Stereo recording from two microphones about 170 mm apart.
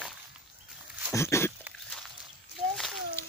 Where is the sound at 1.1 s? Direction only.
15° left (ahead or behind).